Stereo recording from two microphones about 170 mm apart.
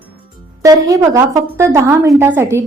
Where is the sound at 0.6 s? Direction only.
20° right (ahead or behind).